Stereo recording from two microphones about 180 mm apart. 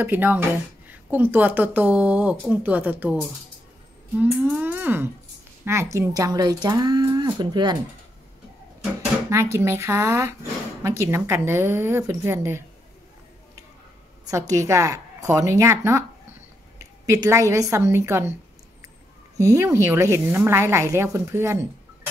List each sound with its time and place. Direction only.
0.0 s speech: 10° right (ahead or behind)
9.3 s speech: 15° right (ahead or behind)
14.3 s speech: 20° right (ahead or behind)
19.3 s speech: 15° right (ahead or behind)